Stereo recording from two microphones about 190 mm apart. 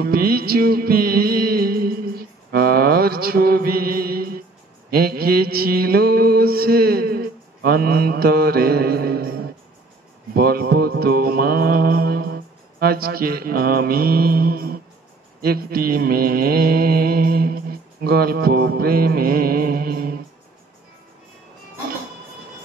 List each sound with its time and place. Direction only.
0.0 s music: 50° right (ahead or behind)
4.9 s mantra: 50° right (ahead or behind)